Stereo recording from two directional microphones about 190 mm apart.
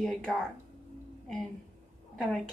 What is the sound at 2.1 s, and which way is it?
Speech, 5° left (ahead or behind).